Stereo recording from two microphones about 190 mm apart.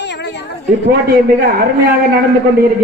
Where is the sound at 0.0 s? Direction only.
65° left (ahead or behind).